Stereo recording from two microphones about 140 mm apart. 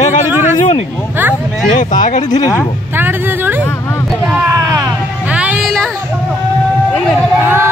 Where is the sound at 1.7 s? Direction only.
65° left (ahead or behind).